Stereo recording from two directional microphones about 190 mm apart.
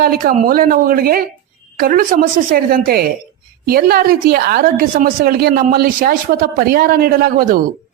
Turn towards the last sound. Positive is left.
turn(degrees=-50)  # may be behind; listen again after turning